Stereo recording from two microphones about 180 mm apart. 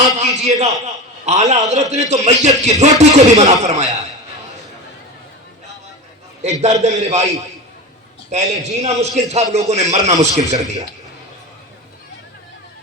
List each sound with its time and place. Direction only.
0.2 s a sound: 40° right (ahead or behind)
1.2 s a man's voice: 40° right (ahead or behind)
6.4 s a man's voice: 40° right (ahead or behind)
8.3 s a man's voice: 40° right (ahead or behind)